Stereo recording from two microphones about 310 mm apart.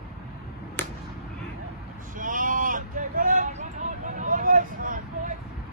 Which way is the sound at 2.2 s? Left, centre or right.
Right.